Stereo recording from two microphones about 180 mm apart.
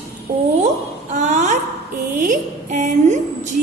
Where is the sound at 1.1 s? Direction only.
45° right (ahead or behind).